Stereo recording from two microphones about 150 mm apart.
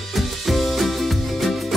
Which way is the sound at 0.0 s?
Centre (ahead or behind).